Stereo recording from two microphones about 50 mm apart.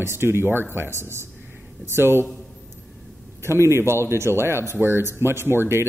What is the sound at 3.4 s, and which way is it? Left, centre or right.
Speech, right.